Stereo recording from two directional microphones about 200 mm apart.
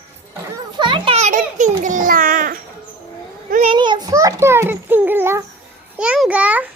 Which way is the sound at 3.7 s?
25° right (ahead or behind).